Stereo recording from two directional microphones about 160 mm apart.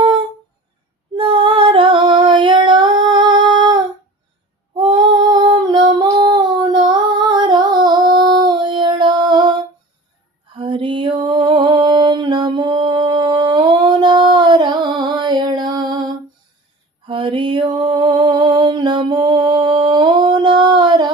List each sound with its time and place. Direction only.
1.1 s female singing: 35° right (ahead or behind)
4.8 s female singing: 30° right (ahead or behind)
8.2 s music: 25° right (ahead or behind)
10.6 s a sound: 30° right (ahead or behind)